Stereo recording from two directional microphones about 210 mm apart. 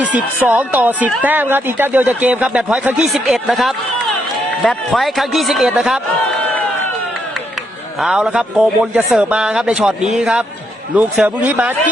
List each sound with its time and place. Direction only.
0.0 s a man's voice: 5° right (ahead or behind)
8.0 s a man's voice: 5° right (ahead or behind)